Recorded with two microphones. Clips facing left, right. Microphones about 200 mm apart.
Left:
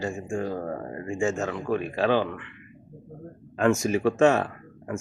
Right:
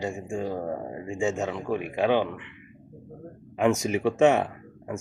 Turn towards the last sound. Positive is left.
turn(degrees=-20)  # may be behind; listen again after turning